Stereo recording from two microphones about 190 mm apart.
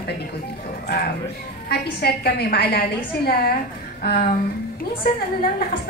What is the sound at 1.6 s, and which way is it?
A woman's voice, 55° left (ahead or behind).